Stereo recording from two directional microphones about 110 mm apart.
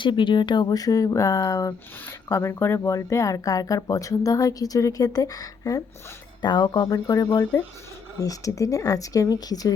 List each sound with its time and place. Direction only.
0.0 s speech: 45° left (ahead or behind)
6.9 s speech: 30° left (ahead or behind)